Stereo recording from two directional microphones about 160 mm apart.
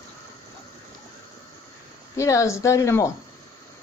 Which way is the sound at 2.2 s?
20° left (ahead or behind).